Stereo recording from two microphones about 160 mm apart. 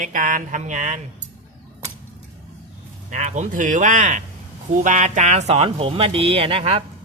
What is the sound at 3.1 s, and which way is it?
Speech, 45° right (ahead or behind).